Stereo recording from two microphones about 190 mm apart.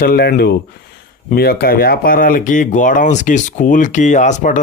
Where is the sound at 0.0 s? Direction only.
55° left (ahead or behind).